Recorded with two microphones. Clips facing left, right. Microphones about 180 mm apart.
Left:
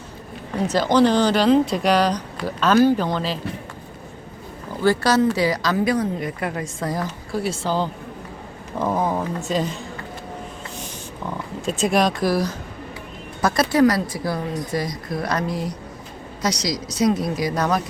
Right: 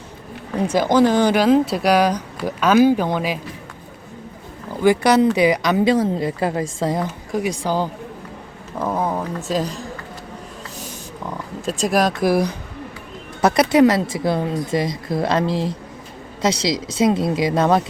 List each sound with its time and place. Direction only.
0.9 s a woman's voice: 10° right (ahead or behind)
4.8 s a woman's voice: 15° right (ahead or behind)
8.8 s speech: centre (ahead or behind)
11.6 s speech: centre (ahead or behind)
12.3 s a woman's voice: 15° right (ahead or behind)